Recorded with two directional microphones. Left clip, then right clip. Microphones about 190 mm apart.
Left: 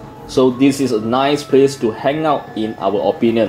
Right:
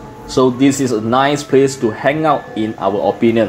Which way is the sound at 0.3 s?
30° right (ahead or behind).